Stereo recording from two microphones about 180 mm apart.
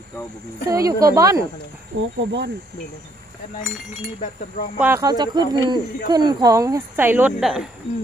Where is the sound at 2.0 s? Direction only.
75° right (ahead or behind).